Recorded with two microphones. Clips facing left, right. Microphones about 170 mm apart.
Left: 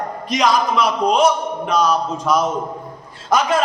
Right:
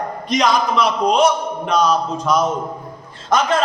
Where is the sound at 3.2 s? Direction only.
5° left (ahead or behind).